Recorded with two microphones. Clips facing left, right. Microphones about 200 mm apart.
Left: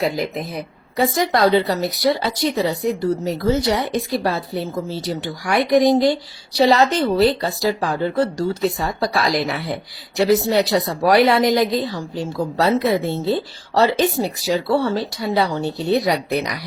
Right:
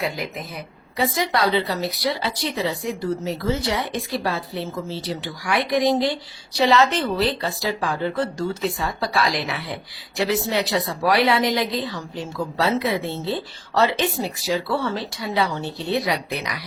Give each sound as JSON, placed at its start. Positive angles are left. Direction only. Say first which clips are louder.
{"t": 0.0, "sound": "a woman's voice", "louder": "left 6 dB", "side_deg": 35}